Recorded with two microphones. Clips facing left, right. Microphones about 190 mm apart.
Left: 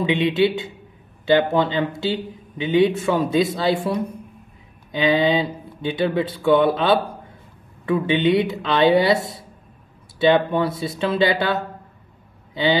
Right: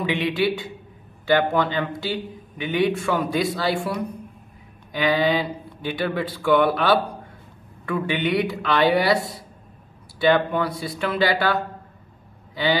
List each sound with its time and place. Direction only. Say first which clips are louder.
0.0 s a man's voice: left 4 dB; 20° left (ahead or behind)